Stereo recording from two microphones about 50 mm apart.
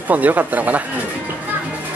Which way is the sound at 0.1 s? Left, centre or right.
Right.